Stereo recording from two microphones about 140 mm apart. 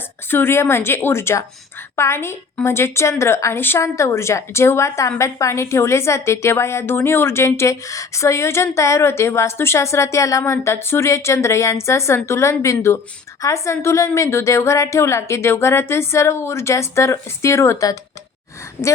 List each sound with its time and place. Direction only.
0.3 s a woman's voice: 15° left (ahead or behind)